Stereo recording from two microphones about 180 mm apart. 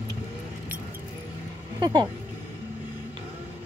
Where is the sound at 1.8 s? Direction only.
25° right (ahead or behind).